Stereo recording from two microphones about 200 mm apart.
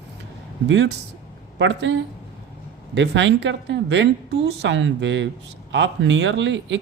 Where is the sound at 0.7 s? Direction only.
70° right (ahead or behind).